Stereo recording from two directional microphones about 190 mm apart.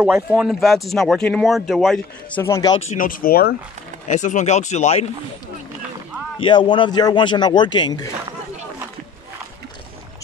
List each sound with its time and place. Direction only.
0.0 s speech: 5° right (ahead or behind)
2.4 s speech: 20° left (ahead or behind)
2.9 s speech: 45° left (ahead or behind)
4.1 s speech: 40° left (ahead or behind)
6.4 s a man's voice: 25° left (ahead or behind)